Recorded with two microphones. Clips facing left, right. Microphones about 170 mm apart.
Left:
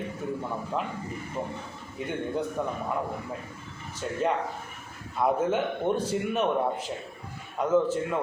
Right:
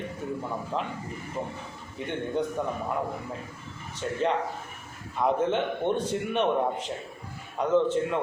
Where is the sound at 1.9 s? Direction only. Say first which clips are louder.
Right 1 dB; 5° left (ahead or behind).